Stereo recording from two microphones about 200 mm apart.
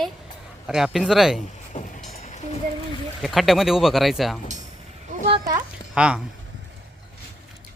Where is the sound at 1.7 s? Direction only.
40° left (ahead or behind).